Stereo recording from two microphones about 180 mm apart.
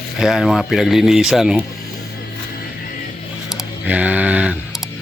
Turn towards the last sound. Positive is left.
turn(degrees=-5)  # may be behind; listen again after turning